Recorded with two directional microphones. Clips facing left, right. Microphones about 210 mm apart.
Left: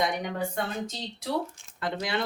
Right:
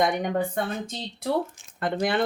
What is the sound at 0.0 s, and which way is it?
Speech, 50° right (ahead or behind).